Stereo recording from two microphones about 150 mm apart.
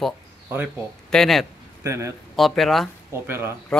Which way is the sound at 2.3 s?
Centre (ahead or behind).